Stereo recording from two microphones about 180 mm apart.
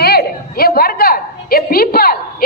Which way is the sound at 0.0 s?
60° left (ahead or behind).